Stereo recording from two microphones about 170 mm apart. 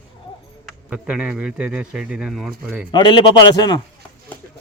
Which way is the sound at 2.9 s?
25° left (ahead or behind).